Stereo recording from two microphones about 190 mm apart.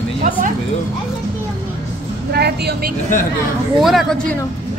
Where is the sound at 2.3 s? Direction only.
60° right (ahead or behind).